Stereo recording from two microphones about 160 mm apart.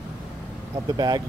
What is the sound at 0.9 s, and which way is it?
Speech, 25° right (ahead or behind).